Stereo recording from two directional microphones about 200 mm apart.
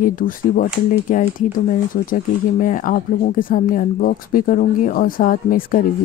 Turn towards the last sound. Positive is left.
turn(degrees=45)  # may be behind; listen again after turning